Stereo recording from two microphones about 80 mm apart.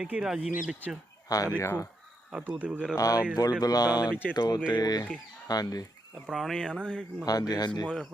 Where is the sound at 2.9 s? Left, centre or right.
Left.